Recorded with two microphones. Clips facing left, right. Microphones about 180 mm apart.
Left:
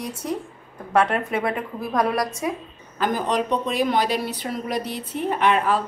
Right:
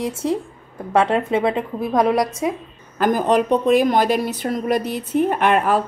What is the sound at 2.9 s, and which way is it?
Speech, 50° right (ahead or behind).